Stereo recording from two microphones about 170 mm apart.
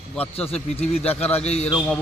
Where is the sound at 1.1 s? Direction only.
10° left (ahead or behind).